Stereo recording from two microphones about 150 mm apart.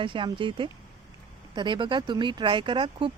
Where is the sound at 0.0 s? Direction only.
35° right (ahead or behind).